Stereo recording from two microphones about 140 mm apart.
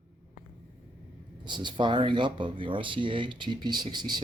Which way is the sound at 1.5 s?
30° right (ahead or behind).